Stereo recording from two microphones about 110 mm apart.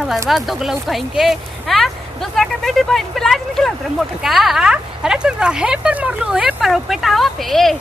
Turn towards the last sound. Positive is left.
turn(degrees=0)  # may be behind; listen again after turning